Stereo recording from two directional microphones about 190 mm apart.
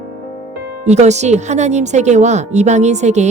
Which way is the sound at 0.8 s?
35° right (ahead or behind).